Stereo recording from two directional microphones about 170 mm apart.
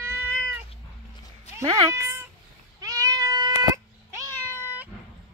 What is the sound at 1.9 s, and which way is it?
Cat, 15° right (ahead or behind).